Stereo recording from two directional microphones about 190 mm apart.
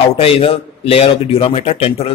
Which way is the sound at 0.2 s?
30° left (ahead or behind).